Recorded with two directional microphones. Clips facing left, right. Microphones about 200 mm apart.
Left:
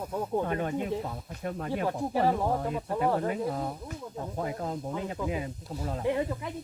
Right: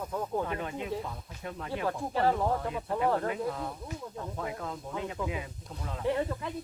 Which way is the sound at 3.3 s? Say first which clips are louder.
Left 2 dB; 40° left (ahead or behind).